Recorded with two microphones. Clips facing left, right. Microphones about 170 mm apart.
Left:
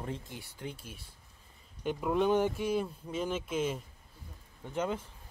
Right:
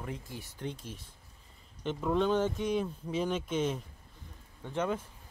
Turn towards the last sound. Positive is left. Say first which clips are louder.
# right 1 dB
turn(degrees=10)  # may be behind; listen again after turning